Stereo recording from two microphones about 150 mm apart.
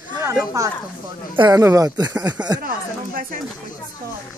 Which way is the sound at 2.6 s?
75° right (ahead or behind).